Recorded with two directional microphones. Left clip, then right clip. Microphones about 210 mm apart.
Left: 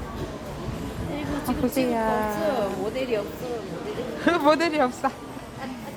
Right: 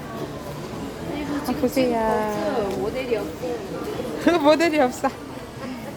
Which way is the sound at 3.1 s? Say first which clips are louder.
Right 2 dB; 35° left (ahead or behind).